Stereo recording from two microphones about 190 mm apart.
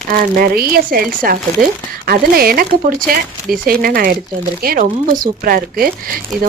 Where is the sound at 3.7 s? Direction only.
50° right (ahead or behind).